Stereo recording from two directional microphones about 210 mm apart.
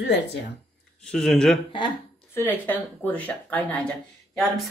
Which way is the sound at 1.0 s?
5° left (ahead or behind).